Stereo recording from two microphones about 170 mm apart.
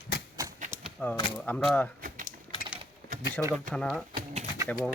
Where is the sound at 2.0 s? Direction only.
50° right (ahead or behind).